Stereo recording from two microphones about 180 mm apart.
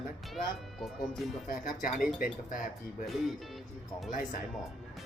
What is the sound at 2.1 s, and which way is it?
Speech, 50° left (ahead or behind).